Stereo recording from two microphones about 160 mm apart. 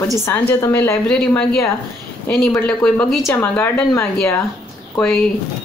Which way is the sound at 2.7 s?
5° left (ahead or behind).